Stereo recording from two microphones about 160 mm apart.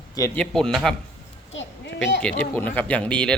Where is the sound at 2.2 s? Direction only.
10° left (ahead or behind).